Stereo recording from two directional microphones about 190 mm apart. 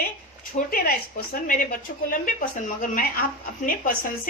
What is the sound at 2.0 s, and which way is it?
A woman's voice, 45° left (ahead or behind).